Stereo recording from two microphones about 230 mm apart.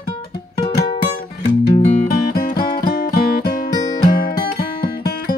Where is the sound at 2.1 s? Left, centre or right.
Left.